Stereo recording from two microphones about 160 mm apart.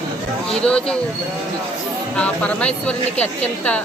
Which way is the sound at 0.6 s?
5° left (ahead or behind).